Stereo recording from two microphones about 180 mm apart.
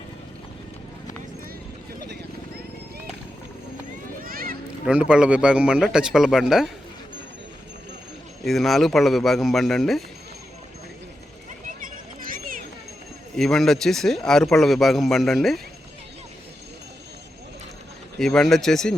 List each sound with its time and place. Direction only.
4.2 s a sound: 55° right (ahead or behind)
4.9 s speech: 5° right (ahead or behind)
8.4 s speech: centre (ahead or behind)
11.6 s a sound: 50° right (ahead or behind)
13.3 s speech: centre (ahead or behind)
18.2 s speech: centre (ahead or behind)